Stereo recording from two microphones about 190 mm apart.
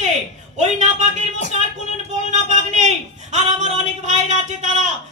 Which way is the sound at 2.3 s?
40° right (ahead or behind).